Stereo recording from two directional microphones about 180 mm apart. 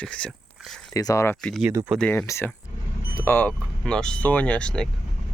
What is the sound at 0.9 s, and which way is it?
Speech, 20° left (ahead or behind).